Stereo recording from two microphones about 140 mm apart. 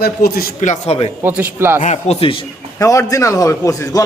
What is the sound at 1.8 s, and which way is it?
Speech, 50° left (ahead or behind).